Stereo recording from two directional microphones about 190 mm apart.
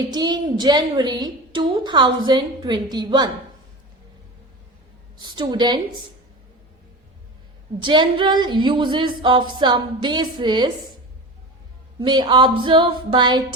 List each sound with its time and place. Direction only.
0.0 s a woman's voice: 20° right (ahead or behind)
5.2 s a woman's voice: 20° right (ahead or behind)
7.8 s a woman's voice: 25° right (ahead or behind)
11.9 s a woman's voice: 25° right (ahead or behind)